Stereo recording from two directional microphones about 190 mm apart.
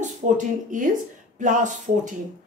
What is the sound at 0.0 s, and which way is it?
A woman's voice, 40° right (ahead or behind).